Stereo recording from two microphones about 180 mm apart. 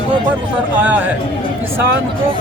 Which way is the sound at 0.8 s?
10° right (ahead or behind).